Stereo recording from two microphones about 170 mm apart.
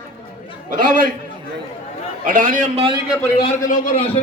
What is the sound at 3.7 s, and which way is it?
Speech, 55° left (ahead or behind).